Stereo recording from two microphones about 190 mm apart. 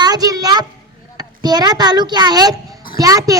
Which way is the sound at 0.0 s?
20° right (ahead or behind).